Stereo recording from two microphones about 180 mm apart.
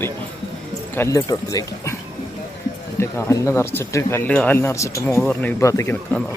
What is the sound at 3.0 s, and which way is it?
Speech, 15° left (ahead or behind).